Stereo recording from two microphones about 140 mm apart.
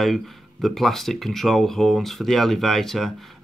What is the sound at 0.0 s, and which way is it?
Speech, centre (ahead or behind).